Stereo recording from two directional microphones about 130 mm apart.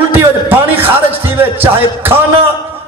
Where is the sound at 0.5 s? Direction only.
15° right (ahead or behind).